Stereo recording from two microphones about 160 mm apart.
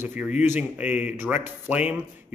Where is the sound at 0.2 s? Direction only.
10° right (ahead or behind).